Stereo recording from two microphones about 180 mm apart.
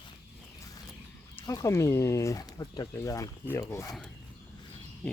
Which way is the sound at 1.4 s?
20° left (ahead or behind).